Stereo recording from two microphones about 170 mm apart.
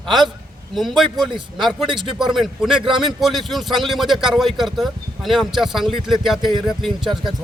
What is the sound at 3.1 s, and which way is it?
A man's voice, centre (ahead or behind).